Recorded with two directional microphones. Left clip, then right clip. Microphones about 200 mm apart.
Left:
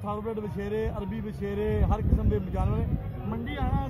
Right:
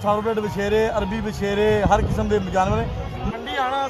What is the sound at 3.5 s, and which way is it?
Speech, 5° right (ahead or behind).